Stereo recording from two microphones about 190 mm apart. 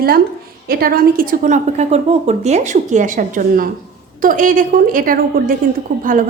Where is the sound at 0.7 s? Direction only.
50° right (ahead or behind).